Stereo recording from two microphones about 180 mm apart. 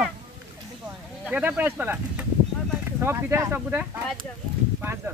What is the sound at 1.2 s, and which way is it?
Speech, 5° right (ahead or behind).